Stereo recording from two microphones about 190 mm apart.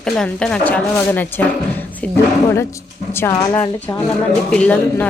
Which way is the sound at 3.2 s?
10° left (ahead or behind).